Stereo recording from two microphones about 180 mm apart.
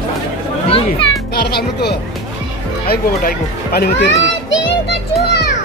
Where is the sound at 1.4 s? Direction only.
65° left (ahead or behind).